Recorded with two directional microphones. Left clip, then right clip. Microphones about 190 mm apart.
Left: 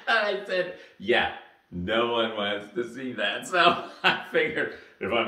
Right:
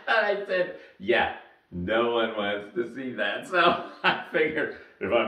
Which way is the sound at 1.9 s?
25° left (ahead or behind).